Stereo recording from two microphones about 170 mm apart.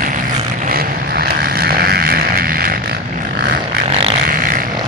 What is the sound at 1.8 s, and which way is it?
Vehicle, 65° right (ahead or behind).